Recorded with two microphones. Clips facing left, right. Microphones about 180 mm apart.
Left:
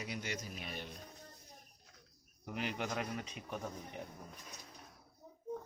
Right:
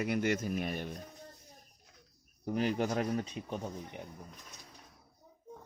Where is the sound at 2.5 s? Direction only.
40° right (ahead or behind).